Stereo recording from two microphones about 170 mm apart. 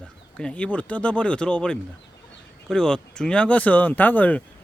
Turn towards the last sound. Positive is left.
turn(degrees=10)  # may be behind; listen again after turning